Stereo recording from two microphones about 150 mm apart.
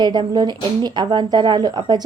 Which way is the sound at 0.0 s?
30° right (ahead or behind).